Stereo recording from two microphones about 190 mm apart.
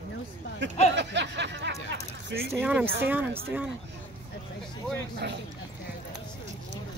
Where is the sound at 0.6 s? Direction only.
70° right (ahead or behind).